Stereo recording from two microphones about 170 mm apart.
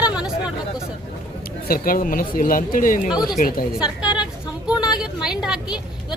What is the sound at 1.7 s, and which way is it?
Speech, 55° left (ahead or behind).